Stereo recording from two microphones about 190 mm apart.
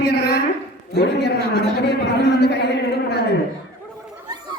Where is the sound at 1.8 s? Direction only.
60° left (ahead or behind).